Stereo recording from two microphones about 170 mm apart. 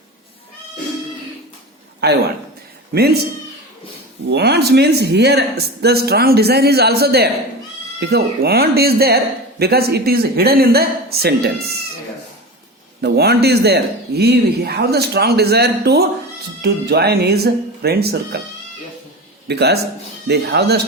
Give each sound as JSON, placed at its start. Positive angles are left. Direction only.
{"t": 2.9, "sound": "speech", "side_deg": -70}
{"t": 4.3, "sound": "speech", "side_deg": -70}
{"t": 13.0, "sound": "speech", "side_deg": -70}
{"t": 19.5, "sound": "speech", "side_deg": -75}